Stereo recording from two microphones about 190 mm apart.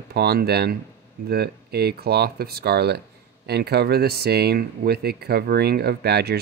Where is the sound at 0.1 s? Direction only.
55° right (ahead or behind).